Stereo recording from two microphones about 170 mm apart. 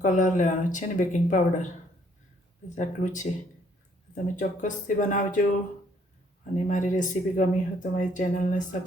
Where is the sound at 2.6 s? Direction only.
45° left (ahead or behind).